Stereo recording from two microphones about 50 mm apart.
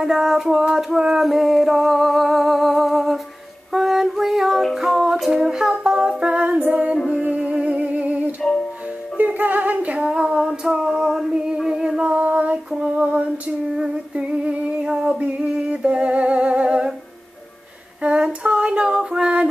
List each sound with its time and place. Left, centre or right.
0.0 s a sound: centre
3.7 s female singing: centre
4.7 s music: centre
6.4 s music: right
8.4 s music: centre
9.1 s female singing: right; by 11.3 s centre
11.3 s a sound: centre
12.0 s child singing: right
12.7 s a sound: right
13.7 s music: right
18.0 s female singing: right